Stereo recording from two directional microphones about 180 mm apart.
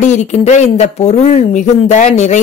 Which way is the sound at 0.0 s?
40° left (ahead or behind).